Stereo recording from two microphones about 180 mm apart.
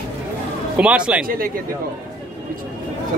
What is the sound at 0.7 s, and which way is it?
Speech, 5° right (ahead or behind).